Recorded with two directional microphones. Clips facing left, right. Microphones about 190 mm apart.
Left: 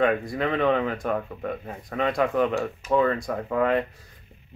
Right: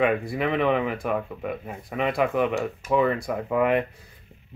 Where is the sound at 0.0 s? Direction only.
5° right (ahead or behind).